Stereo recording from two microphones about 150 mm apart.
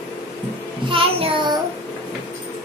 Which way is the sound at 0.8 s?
35° right (ahead or behind).